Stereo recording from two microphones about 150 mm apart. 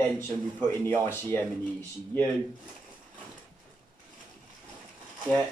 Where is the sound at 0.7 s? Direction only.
15° left (ahead or behind).